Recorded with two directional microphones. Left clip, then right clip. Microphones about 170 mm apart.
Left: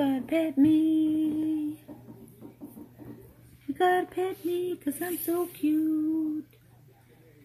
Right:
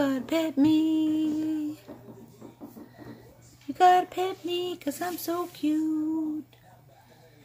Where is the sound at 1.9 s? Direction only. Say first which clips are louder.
Right 2 dB; 10° right (ahead or behind).